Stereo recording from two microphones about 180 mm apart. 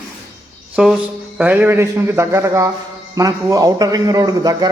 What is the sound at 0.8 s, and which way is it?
A man's voice, 5° right (ahead or behind).